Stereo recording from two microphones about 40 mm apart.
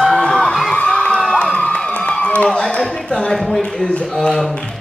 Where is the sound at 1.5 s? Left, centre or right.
Left.